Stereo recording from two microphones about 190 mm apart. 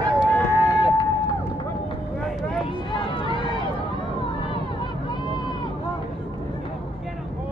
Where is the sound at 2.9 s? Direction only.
25° left (ahead or behind).